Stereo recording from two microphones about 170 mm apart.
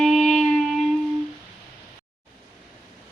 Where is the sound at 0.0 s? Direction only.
5° left (ahead or behind).